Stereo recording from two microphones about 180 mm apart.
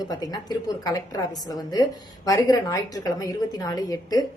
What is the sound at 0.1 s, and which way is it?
A woman's voice, 20° left (ahead or behind).